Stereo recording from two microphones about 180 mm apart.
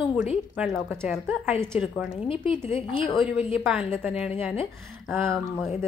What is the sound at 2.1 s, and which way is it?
Speech, 30° left (ahead or behind).